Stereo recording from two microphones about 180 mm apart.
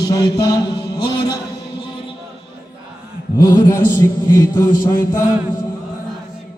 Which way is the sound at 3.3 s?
20° left (ahead or behind).